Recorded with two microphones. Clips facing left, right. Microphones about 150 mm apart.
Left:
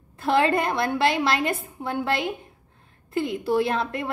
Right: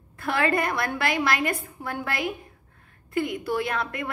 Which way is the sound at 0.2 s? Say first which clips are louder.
Left 3 dB; 25° left (ahead or behind).